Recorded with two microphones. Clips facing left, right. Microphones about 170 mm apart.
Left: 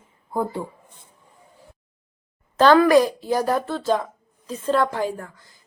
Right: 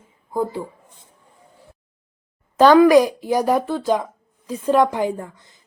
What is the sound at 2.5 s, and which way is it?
A woman's voice, 15° right (ahead or behind).